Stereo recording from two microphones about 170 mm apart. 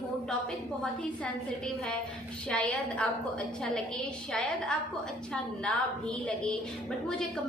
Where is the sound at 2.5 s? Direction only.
5° left (ahead or behind).